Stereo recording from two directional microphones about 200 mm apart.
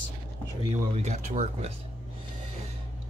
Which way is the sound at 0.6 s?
30° right (ahead or behind).